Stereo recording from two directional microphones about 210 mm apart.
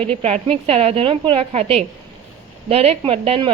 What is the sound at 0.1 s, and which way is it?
A woman's voice, 30° right (ahead or behind).